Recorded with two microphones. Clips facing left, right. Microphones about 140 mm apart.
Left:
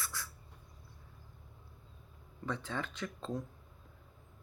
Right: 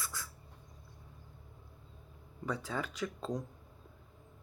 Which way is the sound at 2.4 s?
10° right (ahead or behind).